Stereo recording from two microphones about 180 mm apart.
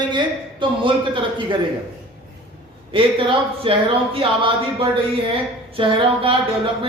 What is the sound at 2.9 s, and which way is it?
A man's voice, 30° right (ahead or behind).